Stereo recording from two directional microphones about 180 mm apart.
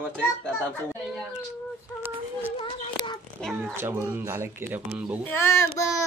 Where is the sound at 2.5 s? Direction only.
25° left (ahead or behind).